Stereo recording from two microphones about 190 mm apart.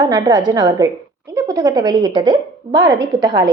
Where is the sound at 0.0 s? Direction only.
20° right (ahead or behind).